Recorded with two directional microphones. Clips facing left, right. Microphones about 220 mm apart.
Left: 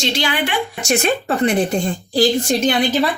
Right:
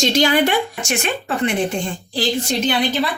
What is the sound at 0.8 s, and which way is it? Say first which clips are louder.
Speech: left 5 dB; 35° left (ahead or behind).